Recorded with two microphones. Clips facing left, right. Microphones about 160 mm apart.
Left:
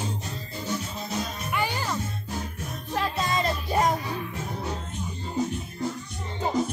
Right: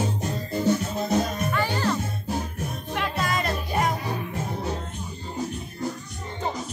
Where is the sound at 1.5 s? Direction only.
15° left (ahead or behind).